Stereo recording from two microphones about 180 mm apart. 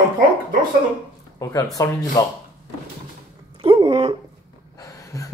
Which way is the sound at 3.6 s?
30° right (ahead or behind).